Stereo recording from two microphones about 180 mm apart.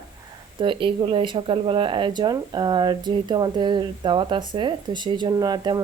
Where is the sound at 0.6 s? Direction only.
30° right (ahead or behind).